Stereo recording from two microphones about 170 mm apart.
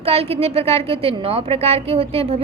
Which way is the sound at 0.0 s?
35° right (ahead or behind).